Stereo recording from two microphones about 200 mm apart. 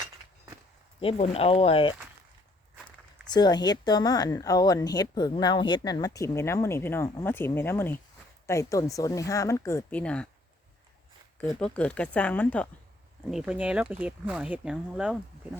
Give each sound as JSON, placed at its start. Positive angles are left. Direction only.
{"t": 1.0, "sound": "speech", "side_deg": 30}
{"t": 3.2, "sound": "speech", "side_deg": 20}
{"t": 11.3, "sound": "speech", "side_deg": 5}
{"t": 13.3, "sound": "speech", "side_deg": -5}